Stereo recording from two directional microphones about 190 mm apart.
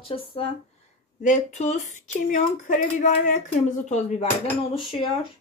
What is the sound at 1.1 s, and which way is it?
Speech, 40° left (ahead or behind).